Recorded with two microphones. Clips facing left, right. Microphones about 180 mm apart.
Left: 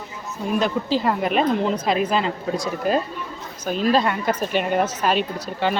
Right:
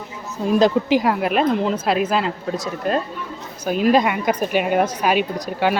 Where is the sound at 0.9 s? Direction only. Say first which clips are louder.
Right 3 dB; 10° right (ahead or behind).